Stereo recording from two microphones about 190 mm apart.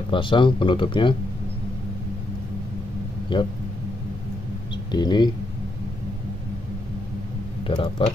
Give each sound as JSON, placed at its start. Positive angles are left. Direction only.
{"t": 0.1, "sound": "speech", "side_deg": 25}
{"t": 3.3, "sound": "speech", "side_deg": 25}
{"t": 4.9, "sound": "speech", "side_deg": 20}
{"t": 7.6, "sound": "speech", "side_deg": 25}